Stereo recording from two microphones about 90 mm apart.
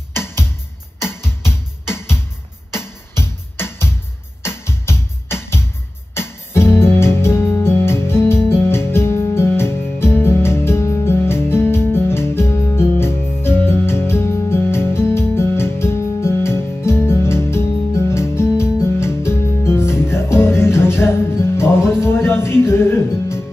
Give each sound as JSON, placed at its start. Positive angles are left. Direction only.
{"t": 0.1, "sound": "music", "side_deg": 25}
{"t": 3.5, "sound": "music", "side_deg": 25}
{"t": 6.8, "sound": "keyboard", "side_deg": 25}
{"t": 7.2, "sound": "music", "side_deg": 30}